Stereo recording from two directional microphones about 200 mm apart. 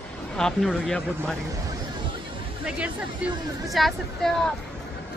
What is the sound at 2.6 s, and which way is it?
A woman's voice, 5° right (ahead or behind).